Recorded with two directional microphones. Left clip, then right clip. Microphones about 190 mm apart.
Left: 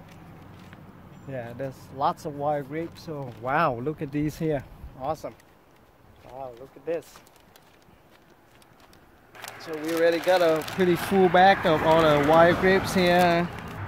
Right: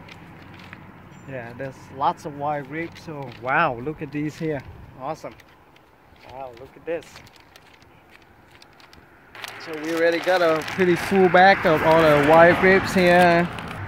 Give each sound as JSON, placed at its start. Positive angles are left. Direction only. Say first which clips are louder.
{"t": 1.3, "sound": "speech", "louder": "right 1 dB", "side_deg": 50}
{"t": 6.3, "sound": "speech", "louder": "right 2 dB", "side_deg": 50}
{"t": 9.9, "sound": "speech", "louder": "right 2 dB", "side_deg": 30}
{"t": 10.2, "sound": "speech", "louder": "right 2 dB", "side_deg": 15}
{"t": 11.6, "sound": "speech", "louder": "right 4 dB", "side_deg": -15}
{"t": 12.5, "sound": "speech", "louder": "right 5 dB", "side_deg": 45}
{"t": 12.9, "sound": "speech", "louder": "right 5 dB", "side_deg": -15}